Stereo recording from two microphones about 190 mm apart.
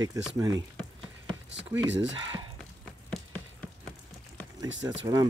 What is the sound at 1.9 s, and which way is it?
Speech, 75° right (ahead or behind).